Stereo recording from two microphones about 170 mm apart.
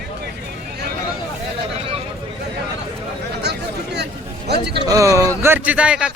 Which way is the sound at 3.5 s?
75° right (ahead or behind).